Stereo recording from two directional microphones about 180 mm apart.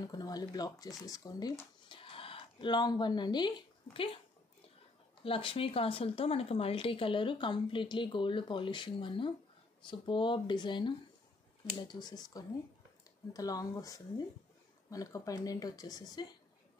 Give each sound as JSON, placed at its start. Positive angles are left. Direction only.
{"t": 0.0, "sound": "speech", "side_deg": 20}
{"t": 5.2, "sound": "speech", "side_deg": 30}